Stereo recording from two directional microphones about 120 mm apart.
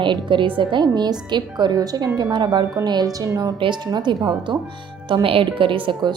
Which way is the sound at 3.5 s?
40° right (ahead or behind).